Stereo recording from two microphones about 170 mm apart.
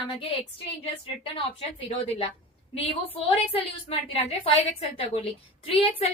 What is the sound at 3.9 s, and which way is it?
Speech, 35° left (ahead or behind).